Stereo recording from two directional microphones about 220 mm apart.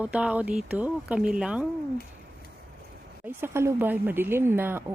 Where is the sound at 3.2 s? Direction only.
10° right (ahead or behind).